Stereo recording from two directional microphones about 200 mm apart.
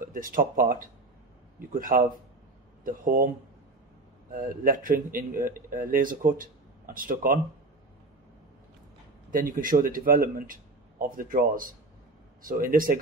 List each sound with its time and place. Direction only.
0.0 s speech: 45° right (ahead or behind)
4.3 s speech: 45° right (ahead or behind)
9.3 s speech: 45° right (ahead or behind)